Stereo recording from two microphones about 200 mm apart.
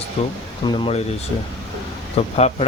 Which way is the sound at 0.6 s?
25° left (ahead or behind).